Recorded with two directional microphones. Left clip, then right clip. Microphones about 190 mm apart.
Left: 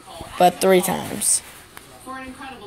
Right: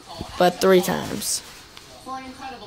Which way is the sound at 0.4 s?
15° right (ahead or behind).